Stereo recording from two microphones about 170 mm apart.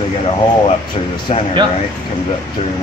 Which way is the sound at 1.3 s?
45° left (ahead or behind).